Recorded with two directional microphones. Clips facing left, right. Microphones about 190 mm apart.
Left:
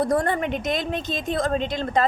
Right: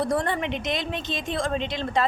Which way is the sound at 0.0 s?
50° left (ahead or behind).